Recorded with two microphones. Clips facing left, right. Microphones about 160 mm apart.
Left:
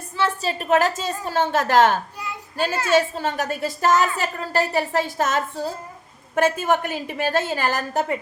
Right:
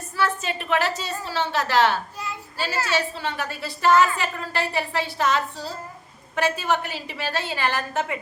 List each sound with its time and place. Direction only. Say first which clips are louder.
0.4 s a woman's voice: left 5 dB; 45° left (ahead or behind)